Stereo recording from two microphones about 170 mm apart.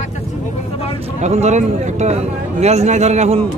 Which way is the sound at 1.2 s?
40° right (ahead or behind).